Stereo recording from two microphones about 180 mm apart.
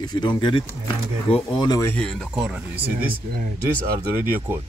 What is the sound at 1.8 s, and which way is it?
Speech, 5° left (ahead or behind).